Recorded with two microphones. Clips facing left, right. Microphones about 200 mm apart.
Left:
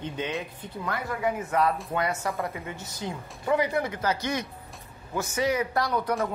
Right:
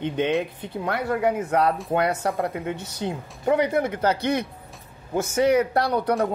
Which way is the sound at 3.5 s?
55° right (ahead or behind).